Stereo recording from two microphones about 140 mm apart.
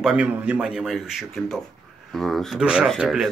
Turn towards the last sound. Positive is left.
turn(degrees=0)  # may be behind; listen again after turning